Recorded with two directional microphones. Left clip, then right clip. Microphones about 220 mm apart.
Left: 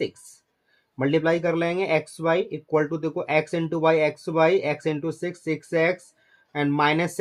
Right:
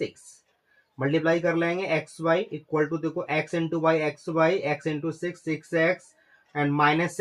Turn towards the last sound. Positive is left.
turn(degrees=30)  # may be behind; listen again after turning